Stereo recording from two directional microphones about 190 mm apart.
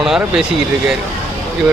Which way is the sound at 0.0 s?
Centre (ahead or behind).